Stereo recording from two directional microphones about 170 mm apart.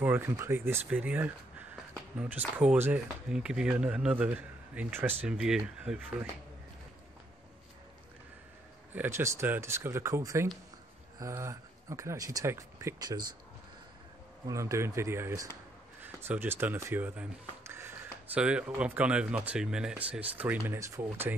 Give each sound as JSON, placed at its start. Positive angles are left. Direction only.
{"t": 0.0, "sound": "speech", "side_deg": -10}
{"t": 8.9, "sound": "speech", "side_deg": -15}
{"t": 14.5, "sound": "speech", "side_deg": -15}